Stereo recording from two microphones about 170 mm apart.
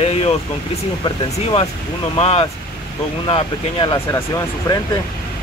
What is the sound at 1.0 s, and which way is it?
Speech, 35° left (ahead or behind).